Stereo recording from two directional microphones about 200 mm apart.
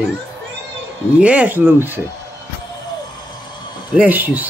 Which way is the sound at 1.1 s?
5° right (ahead or behind).